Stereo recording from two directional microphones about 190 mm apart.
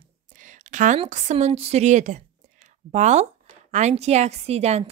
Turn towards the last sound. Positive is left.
turn(degrees=-35)  # may be behind; listen again after turning